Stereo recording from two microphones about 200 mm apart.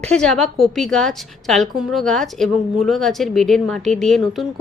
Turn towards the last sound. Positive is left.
turn(degrees=0)  # may be behind; listen again after turning